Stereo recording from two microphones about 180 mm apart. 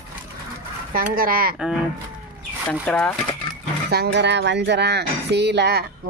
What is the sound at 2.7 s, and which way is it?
Speech, 5° left (ahead or behind).